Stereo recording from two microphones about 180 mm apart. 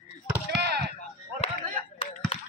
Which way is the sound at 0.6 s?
65° right (ahead or behind).